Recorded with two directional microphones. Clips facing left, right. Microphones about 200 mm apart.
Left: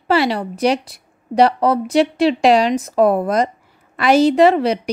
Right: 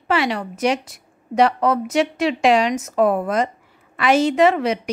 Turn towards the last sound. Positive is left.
turn(degrees=35)  # may be behind; listen again after turning